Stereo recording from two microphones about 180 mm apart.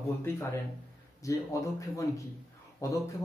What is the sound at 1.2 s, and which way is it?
Speech, 15° left (ahead or behind).